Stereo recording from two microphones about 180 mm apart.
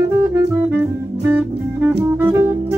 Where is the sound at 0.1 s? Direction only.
15° right (ahead or behind).